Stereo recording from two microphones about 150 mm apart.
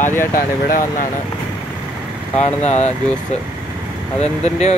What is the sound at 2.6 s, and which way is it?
Speech, 45° left (ahead or behind).